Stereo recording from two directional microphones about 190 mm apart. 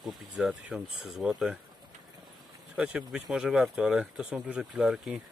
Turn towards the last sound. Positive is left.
turn(degrees=-5)  # may be behind; listen again after turning